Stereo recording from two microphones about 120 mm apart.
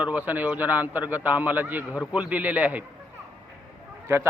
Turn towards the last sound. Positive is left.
turn(degrees=-20)  # may be behind; listen again after turning